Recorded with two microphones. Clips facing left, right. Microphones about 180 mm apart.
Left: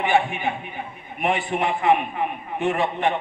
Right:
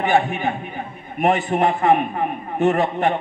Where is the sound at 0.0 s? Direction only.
40° right (ahead or behind).